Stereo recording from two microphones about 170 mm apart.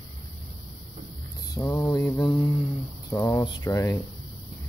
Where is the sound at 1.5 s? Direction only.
20° left (ahead or behind).